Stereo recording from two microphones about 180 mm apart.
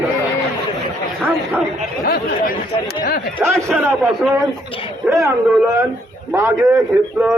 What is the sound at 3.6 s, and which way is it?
Speech, 15° right (ahead or behind).